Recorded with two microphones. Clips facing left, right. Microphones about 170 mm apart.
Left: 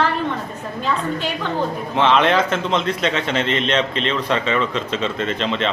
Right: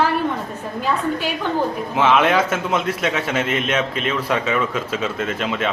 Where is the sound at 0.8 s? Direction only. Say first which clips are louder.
Right 1 dB; 10° right (ahead or behind).